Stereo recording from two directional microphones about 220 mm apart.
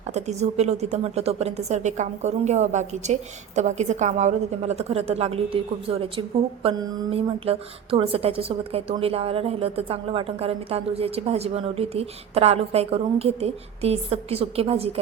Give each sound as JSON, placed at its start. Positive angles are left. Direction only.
{"t": 0.1, "sound": "a woman's voice", "side_deg": -30}